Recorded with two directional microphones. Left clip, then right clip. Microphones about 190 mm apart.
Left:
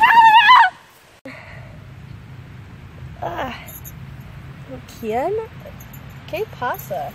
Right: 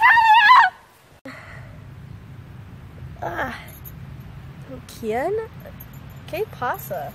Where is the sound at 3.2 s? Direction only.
5° right (ahead or behind).